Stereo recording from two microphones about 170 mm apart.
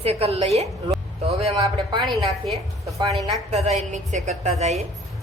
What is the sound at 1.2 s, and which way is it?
Music, 35° right (ahead or behind).